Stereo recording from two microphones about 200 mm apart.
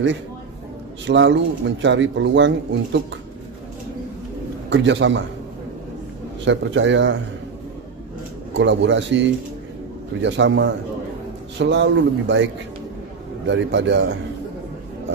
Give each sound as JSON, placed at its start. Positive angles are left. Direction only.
{"t": 1.0, "sound": "speech", "side_deg": -65}
{"t": 4.6, "sound": "speech", "side_deg": -65}
{"t": 6.4, "sound": "speech", "side_deg": -65}
{"t": 8.5, "sound": "a man's voice", "side_deg": -65}
{"t": 13.5, "sound": "speech", "side_deg": -65}